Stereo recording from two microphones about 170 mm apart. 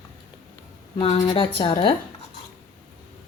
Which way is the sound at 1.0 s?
30° left (ahead or behind).